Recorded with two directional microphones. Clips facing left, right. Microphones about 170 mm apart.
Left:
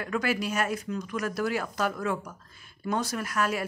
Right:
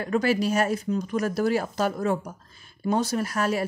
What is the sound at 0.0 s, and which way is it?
Speech, 30° right (ahead or behind).